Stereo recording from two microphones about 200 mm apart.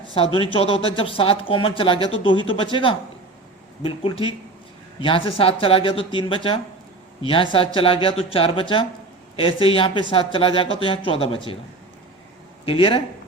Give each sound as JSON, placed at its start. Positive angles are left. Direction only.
{"t": 0.5, "sound": "speech", "side_deg": 30}
{"t": 12.6, "sound": "speech", "side_deg": 25}